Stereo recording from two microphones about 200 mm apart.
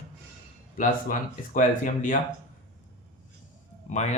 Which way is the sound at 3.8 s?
35° left (ahead or behind).